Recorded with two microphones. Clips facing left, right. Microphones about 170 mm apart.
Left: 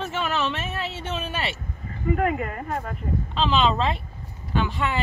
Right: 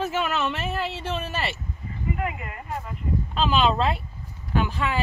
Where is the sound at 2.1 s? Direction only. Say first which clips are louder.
Left 7 dB; 50° left (ahead or behind).